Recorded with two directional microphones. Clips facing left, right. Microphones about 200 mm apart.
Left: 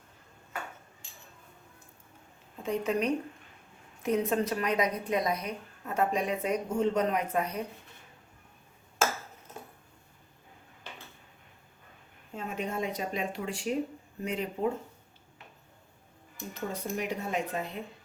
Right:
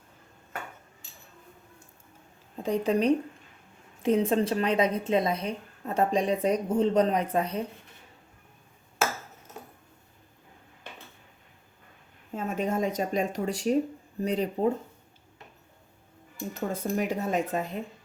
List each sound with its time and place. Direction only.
2.6 s a woman's voice: 30° right (ahead or behind)
12.3 s a woman's voice: 45° right (ahead or behind)
16.6 s speech: 45° right (ahead or behind)